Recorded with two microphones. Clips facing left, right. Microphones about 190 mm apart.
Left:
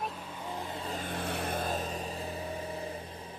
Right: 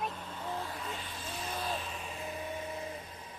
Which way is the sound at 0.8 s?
35° left (ahead or behind).